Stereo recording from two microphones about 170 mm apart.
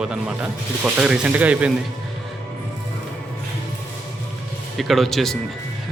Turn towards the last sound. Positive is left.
turn(degrees=0)  # may be behind; listen again after turning